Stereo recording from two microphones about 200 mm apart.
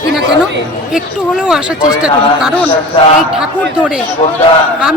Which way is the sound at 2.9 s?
25° left (ahead or behind).